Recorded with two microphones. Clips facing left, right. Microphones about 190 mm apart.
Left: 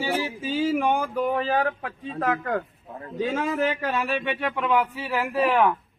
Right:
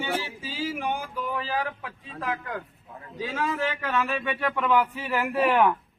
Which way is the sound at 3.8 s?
35° left (ahead or behind).